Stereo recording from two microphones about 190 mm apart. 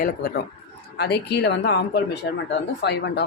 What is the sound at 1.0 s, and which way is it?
Speech, 60° left (ahead or behind).